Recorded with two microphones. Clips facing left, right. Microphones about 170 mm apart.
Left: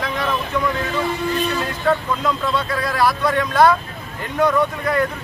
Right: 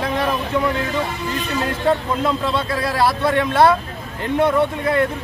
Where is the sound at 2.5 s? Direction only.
30° right (ahead or behind).